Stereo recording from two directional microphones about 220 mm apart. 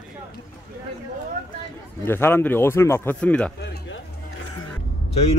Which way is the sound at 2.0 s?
10° left (ahead or behind).